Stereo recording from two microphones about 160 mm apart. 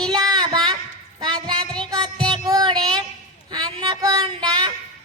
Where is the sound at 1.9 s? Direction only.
25° right (ahead or behind).